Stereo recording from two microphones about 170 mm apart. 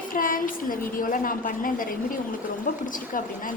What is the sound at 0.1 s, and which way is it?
A woman's voice, 55° left (ahead or behind).